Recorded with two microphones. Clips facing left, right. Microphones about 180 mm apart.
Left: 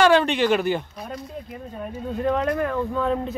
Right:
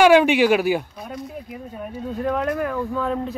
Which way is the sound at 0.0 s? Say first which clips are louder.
Right 4 dB; 10° right (ahead or behind).